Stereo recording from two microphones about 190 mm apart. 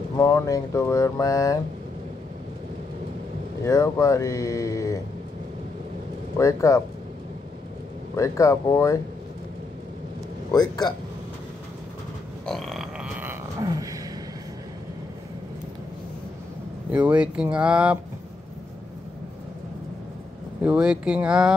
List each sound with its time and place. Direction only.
0.2 s speech: 15° left (ahead or behind)
3.6 s speech: 15° left (ahead or behind)
6.3 s speech: 15° left (ahead or behind)
8.2 s speech: 15° left (ahead or behind)
10.5 s a man's voice: 20° left (ahead or behind)
12.4 s a sound: centre (ahead or behind); by 13.8 s 20° right (ahead or behind)
16.9 s speech: 5° right (ahead or behind)
20.6 s speech: 5° right (ahead or behind)